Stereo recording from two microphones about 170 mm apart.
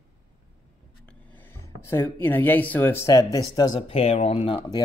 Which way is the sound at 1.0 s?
10° left (ahead or behind).